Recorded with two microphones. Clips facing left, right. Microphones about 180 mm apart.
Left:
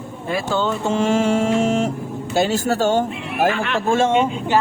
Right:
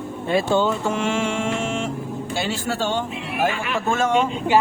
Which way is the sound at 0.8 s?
35° left (ahead or behind).